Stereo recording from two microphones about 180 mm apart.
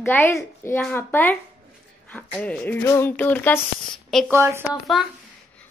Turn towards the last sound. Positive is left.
turn(degrees=0)  # may be behind; listen again after turning